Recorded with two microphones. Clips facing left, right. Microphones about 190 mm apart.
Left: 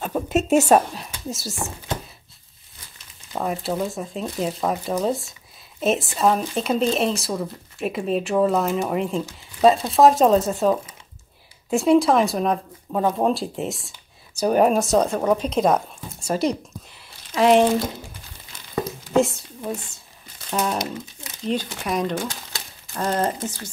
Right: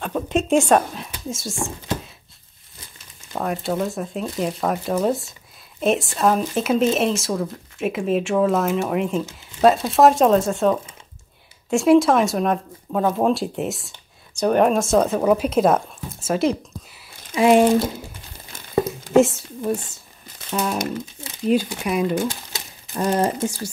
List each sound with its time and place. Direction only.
0.0 s speech: 5° left (ahead or behind)
3.3 s a woman's voice: centre (ahead or behind)
19.1 s speech: centre (ahead or behind)
19.7 s speech: 25° right (ahead or behind)
20.5 s speech: 5° right (ahead or behind)